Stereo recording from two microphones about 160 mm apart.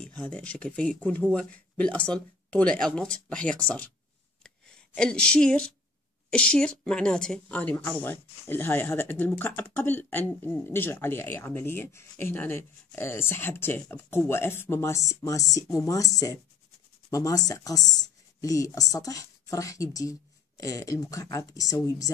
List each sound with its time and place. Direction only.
0.0 s speech: 5° left (ahead or behind)
4.4 s a sound: 5° left (ahead or behind)
6.3 s speech: 5° left (ahead or behind); by 22.1 s 20° left (ahead or behind)